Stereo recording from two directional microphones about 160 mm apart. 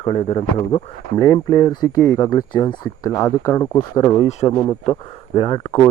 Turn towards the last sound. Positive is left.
turn(degrees=35)  # may be behind; listen again after turning